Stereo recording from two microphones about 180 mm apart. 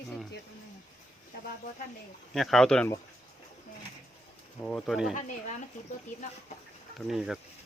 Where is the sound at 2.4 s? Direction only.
Centre (ahead or behind).